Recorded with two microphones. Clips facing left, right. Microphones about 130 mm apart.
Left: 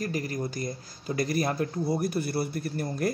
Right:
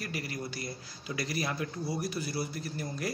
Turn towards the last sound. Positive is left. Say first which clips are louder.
# left 7 dB
turn(degrees=50)  # may be behind; listen again after turning